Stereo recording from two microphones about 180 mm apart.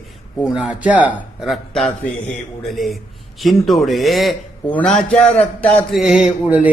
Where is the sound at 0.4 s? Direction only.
5° right (ahead or behind).